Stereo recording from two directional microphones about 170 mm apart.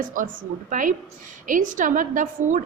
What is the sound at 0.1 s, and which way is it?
A woman's voice, 50° right (ahead or behind).